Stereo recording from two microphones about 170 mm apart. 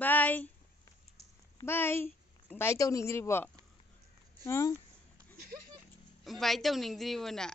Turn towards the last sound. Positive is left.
turn(degrees=5)  # may be behind; listen again after turning